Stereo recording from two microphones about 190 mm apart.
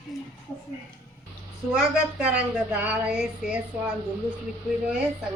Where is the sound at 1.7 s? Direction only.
5° right (ahead or behind).